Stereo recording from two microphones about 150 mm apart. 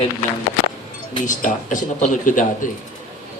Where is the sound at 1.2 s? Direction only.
55° left (ahead or behind).